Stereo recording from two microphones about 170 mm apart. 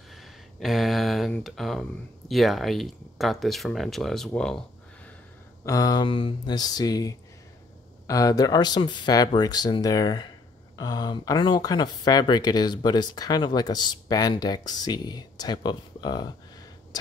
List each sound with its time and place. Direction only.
0.1 s speech: centre (ahead or behind)
4.4 s a sound: 5° left (ahead or behind)
5.7 s speech: 20° left (ahead or behind)